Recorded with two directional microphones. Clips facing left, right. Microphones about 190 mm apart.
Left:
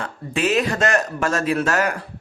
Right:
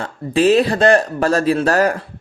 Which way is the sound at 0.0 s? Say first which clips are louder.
Right 8 dB; 35° right (ahead or behind).